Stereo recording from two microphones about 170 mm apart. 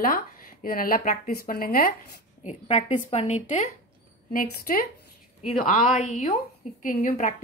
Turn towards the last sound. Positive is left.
turn(degrees=45)  # may be behind; listen again after turning